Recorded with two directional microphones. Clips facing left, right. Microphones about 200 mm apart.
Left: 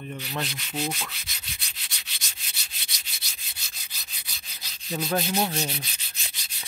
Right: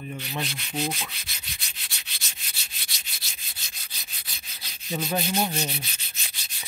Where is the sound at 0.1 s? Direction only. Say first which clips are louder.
Left 1 dB; centre (ahead or behind).